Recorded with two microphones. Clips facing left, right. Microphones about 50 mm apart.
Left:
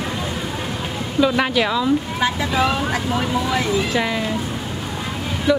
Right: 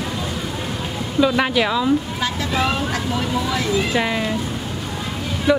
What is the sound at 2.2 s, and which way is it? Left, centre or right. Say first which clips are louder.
Speech: left 2 dB; centre.